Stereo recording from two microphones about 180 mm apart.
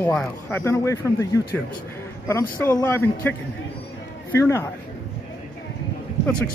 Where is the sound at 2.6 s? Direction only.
15° left (ahead or behind).